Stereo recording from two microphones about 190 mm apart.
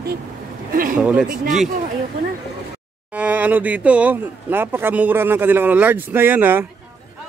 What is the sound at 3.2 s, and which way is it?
Speech, 10° right (ahead or behind).